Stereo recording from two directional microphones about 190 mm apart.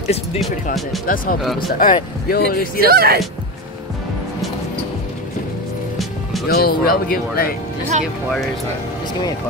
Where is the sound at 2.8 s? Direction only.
55° right (ahead or behind).